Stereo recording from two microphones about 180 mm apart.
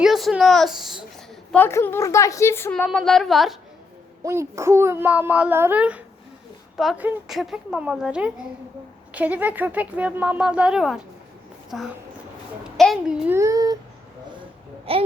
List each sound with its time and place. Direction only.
0.0 s a child's voice: centre (ahead or behind)
1.5 s a woman's voice: 10° left (ahead or behind)
2.7 s a woman's voice: 5° left (ahead or behind)
4.2 s a woman's voice: 15° right (ahead or behind)
14.9 s a child's voice: 30° right (ahead or behind)